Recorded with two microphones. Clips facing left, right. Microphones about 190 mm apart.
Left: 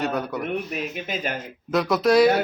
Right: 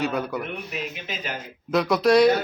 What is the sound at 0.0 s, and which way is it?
Speech, centre (ahead or behind).